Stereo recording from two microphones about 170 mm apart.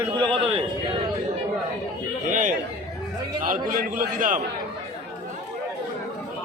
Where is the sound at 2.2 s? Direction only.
50° right (ahead or behind).